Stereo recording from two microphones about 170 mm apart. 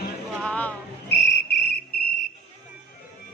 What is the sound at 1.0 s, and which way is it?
Cricket, 75° left (ahead or behind).